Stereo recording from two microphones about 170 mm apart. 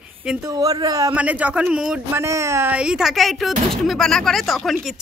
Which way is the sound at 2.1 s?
15° right (ahead or behind).